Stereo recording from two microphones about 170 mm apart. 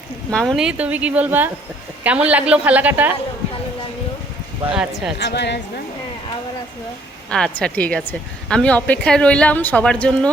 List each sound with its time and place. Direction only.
0.3 s speech: 5° left (ahead or behind)
4.6 s speech: 5° right (ahead or behind)
5.1 s a woman's voice: 80° left
7.3 s a woman's voice: 5° left (ahead or behind)